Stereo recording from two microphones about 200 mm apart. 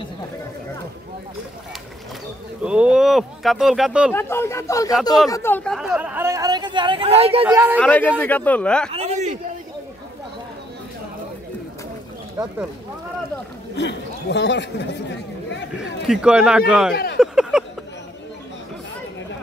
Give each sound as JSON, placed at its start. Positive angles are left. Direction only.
{"t": 2.6, "sound": "speech", "side_deg": -5}
{"t": 4.1, "sound": "speech", "side_deg": 10}
{"t": 7.5, "sound": "speech", "side_deg": -10}
{"t": 7.8, "sound": "speech", "side_deg": 10}
{"t": 8.9, "sound": "a sound", "side_deg": -35}
{"t": 13.7, "sound": "speech", "side_deg": 60}
{"t": 16.1, "sound": "a man's voice", "side_deg": -5}
{"t": 16.9, "sound": "speech", "side_deg": 50}
{"t": 17.2, "sound": "a sound", "side_deg": -5}